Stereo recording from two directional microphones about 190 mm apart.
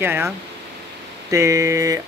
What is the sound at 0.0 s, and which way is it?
Speech, 10° right (ahead or behind).